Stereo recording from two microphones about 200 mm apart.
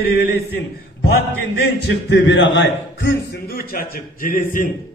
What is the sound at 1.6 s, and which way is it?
A man's voice, 55° left (ahead or behind).